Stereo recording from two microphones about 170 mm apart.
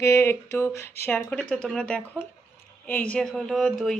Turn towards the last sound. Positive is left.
turn(degrees=5)  # may be behind; listen again after turning